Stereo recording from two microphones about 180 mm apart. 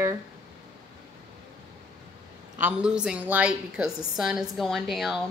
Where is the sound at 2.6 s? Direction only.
5° right (ahead or behind).